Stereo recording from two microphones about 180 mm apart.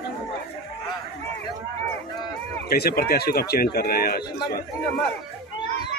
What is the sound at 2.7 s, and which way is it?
Speech, 60° left (ahead or behind).